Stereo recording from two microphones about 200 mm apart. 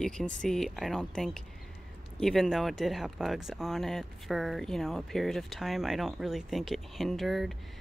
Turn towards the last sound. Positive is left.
turn(degrees=0)  # may be behind; listen again after turning